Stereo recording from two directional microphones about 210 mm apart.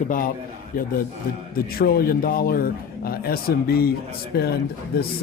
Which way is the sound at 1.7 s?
45° left (ahead or behind).